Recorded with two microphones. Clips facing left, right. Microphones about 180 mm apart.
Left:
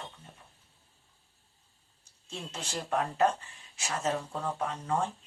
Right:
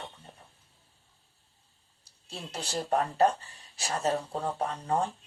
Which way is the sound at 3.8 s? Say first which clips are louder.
Right 2 dB; 35° right (ahead or behind).